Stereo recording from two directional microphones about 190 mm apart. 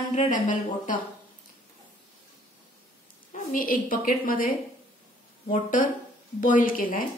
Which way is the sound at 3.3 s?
45° left (ahead or behind).